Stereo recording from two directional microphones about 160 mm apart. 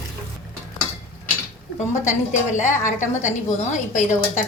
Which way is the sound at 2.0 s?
50° left (ahead or behind).